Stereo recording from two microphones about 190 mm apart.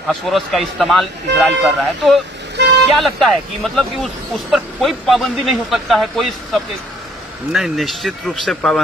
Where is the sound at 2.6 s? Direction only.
65° right (ahead or behind).